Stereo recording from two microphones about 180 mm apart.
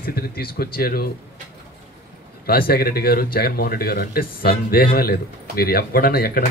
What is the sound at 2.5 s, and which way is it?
Speech, 55° left (ahead or behind).